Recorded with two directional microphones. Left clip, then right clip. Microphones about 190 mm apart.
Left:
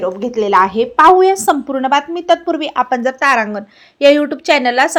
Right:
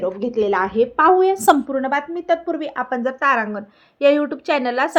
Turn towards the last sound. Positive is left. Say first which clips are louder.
# left 7 dB
turn(degrees=30)  # may be behind; listen again after turning